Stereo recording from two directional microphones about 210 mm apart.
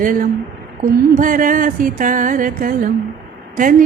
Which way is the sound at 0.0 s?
40° right (ahead or behind).